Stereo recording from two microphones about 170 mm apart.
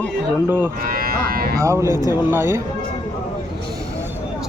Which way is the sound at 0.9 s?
60° right (ahead or behind).